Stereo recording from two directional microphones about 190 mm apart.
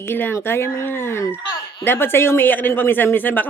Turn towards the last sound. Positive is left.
turn(degrees=10)  # may be behind; listen again after turning